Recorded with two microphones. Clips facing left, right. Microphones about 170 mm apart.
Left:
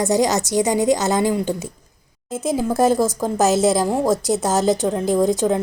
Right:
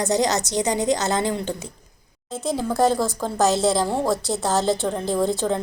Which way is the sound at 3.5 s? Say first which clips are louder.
Left 3 dB; 20° left (ahead or behind).